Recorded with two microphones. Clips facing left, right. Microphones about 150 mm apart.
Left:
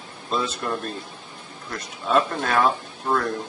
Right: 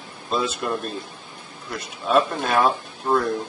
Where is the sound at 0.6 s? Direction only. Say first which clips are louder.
Right 2 dB; 15° right (ahead or behind).